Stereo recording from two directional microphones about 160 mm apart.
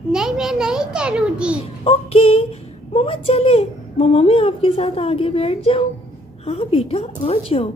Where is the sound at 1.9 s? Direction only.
40° left (ahead or behind).